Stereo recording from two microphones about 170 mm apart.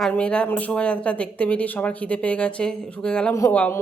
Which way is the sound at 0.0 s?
5° left (ahead or behind).